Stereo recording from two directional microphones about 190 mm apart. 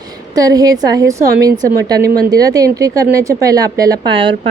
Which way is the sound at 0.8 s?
20° right (ahead or behind).